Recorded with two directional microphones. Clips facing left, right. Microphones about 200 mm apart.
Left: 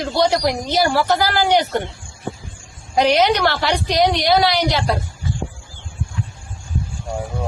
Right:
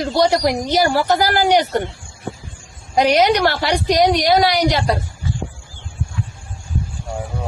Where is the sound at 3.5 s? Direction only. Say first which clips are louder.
Right 2 dB; 15° right (ahead or behind).